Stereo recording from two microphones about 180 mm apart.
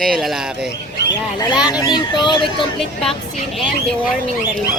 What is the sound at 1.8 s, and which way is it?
Speech, 25° left (ahead or behind).